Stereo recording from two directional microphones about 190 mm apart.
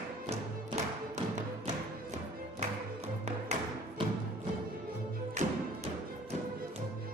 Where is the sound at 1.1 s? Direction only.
40° right (ahead or behind).